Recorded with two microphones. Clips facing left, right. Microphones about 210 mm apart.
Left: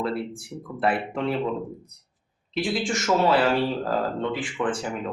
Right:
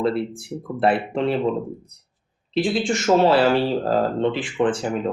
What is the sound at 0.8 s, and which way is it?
Speech, 30° right (ahead or behind).